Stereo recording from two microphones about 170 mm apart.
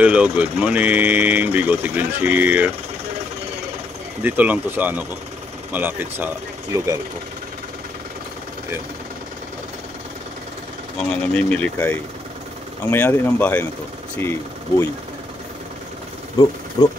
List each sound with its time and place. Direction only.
0.0 s speech: 5° right (ahead or behind)
4.2 s speech: 10° right (ahead or behind)
11.0 s speech: 5° left (ahead or behind)
16.8 s speech: 25° left (ahead or behind)